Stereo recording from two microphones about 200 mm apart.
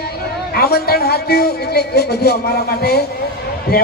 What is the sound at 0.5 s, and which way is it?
A man's voice, 50° left (ahead or behind).